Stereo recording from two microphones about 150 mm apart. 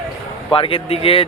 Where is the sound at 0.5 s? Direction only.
35° left (ahead or behind).